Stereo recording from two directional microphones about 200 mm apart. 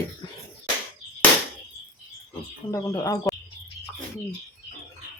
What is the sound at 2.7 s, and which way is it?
Speech, 20° left (ahead or behind).